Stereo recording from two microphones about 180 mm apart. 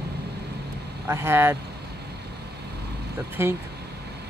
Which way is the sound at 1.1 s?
15° right (ahead or behind).